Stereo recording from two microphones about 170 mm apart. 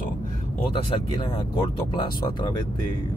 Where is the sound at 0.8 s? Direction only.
30° left (ahead or behind).